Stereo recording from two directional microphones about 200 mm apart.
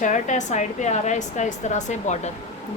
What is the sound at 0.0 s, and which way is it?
A woman's voice, 40° left (ahead or behind).